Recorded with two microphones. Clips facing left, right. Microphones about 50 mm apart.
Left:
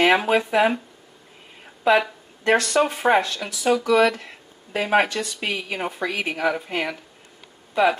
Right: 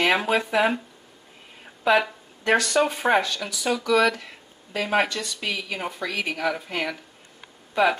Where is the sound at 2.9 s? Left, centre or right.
Centre.